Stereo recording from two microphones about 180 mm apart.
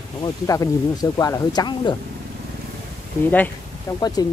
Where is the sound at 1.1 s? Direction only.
20° left (ahead or behind).